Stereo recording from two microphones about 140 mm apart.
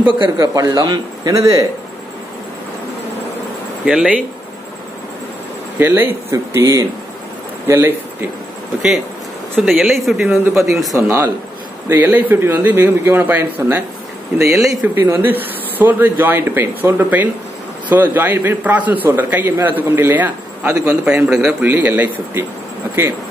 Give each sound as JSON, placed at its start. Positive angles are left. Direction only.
{"t": 0.0, "sound": "a man's voice", "side_deg": -30}
{"t": 3.8, "sound": "a man's voice", "side_deg": -5}
{"t": 5.8, "sound": "a man's voice", "side_deg": -15}
{"t": 9.6, "sound": "speech", "side_deg": 0}
{"t": 11.0, "sound": "a man's voice", "side_deg": -20}
{"t": 14.6, "sound": "speech", "side_deg": 0}
{"t": 15.0, "sound": "a man's voice", "side_deg": -15}